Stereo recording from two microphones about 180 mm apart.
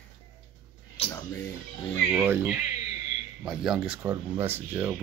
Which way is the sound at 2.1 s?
10° right (ahead or behind).